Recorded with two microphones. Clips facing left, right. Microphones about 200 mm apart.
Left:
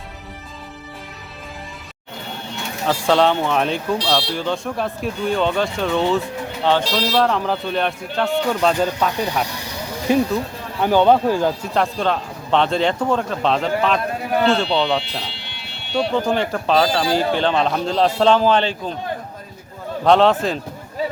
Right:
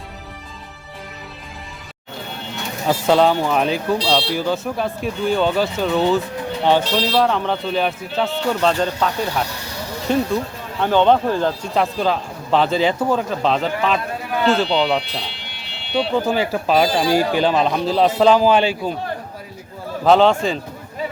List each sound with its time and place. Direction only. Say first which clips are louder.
2.8 s speech: right 1 dB; 5° right (ahead or behind)
3.9 s speech: right 1 dB; 20° right (ahead or behind)
4.4 s speech: right 2 dB; 5° right (ahead or behind)
11.7 s speech: right 1 dB; centre (ahead or behind)
20.1 s speech: right 1 dB; centre (ahead or behind)